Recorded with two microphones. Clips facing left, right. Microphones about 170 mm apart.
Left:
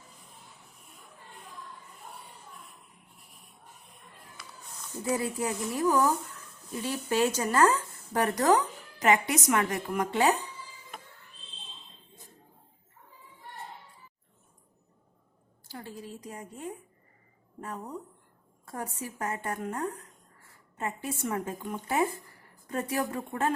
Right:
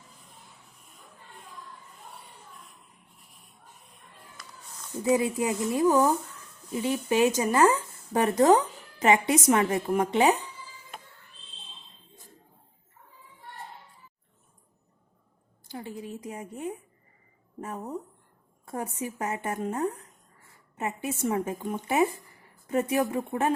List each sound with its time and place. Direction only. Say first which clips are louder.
5.0 s speech: right 5 dB; 20° right (ahead or behind)
15.6 s a sound: right 4 dB; 20° right (ahead or behind)
17.6 s speech: right 3 dB; 20° right (ahead or behind)